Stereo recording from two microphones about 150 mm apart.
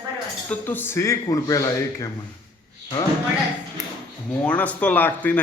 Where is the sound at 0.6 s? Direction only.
15° left (ahead or behind).